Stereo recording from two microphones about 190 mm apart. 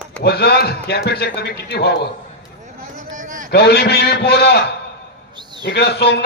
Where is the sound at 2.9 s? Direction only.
40° right (ahead or behind).